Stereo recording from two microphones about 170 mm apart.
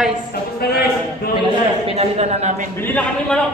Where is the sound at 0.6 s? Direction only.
65° left (ahead or behind).